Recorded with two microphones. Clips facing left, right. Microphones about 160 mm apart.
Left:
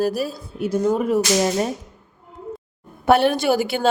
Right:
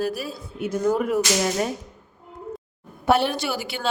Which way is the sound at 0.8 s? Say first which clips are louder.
Left 2 dB; 25° left (ahead or behind).